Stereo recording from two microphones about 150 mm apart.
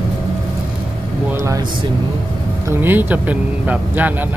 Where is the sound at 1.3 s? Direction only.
20° right (ahead or behind).